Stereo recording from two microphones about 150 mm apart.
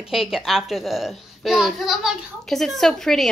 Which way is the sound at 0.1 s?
Centre (ahead or behind).